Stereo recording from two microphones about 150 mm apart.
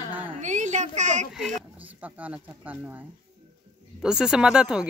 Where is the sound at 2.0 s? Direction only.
10° right (ahead or behind).